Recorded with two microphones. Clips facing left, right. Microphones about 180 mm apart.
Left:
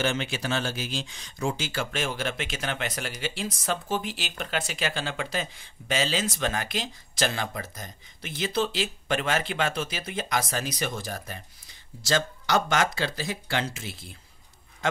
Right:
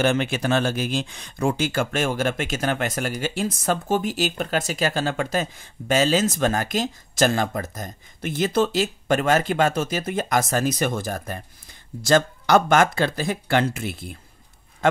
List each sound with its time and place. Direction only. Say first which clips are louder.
0.0 s speech: right 7 dB; 55° right (ahead or behind)